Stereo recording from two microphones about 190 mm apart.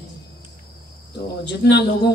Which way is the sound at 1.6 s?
60° left (ahead or behind).